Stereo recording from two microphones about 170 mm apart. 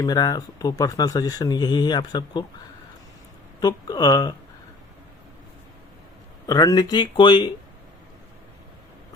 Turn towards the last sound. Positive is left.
turn(degrees=25)  # may be behind; listen again after turning